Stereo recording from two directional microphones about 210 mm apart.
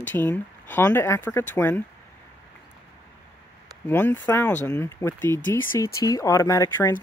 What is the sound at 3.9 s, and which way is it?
Speech, 10° left (ahead or behind).